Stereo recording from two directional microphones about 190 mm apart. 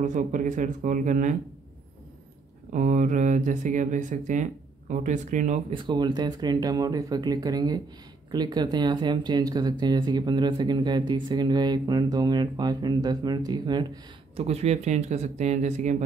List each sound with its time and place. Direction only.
0.0 s speech: 40° right (ahead or behind)
2.7 s speech: 40° right (ahead or behind)
5.7 s speech: 25° right (ahead or behind)
14.3 s speech: 35° right (ahead or behind)